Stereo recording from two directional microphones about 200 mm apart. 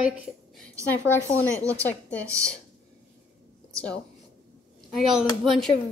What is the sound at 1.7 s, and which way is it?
Speech, 10° left (ahead or behind).